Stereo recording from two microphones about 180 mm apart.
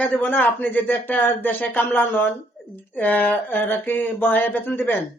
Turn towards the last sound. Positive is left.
turn(degrees=10)  # may be behind; listen again after turning